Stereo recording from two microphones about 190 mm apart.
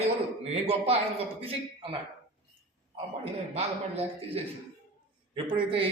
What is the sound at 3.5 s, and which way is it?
Speech, 30° right (ahead or behind).